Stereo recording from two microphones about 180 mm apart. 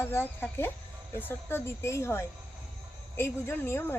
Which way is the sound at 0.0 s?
15° left (ahead or behind).